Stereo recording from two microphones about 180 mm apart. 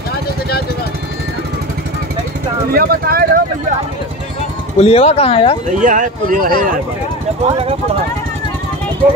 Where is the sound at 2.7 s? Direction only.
55° right (ahead or behind).